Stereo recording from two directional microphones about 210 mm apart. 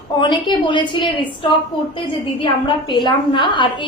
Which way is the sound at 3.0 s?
20° left (ahead or behind).